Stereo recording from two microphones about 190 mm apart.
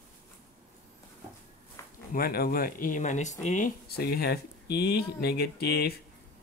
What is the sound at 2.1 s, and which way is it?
Speech, 55° left (ahead or behind).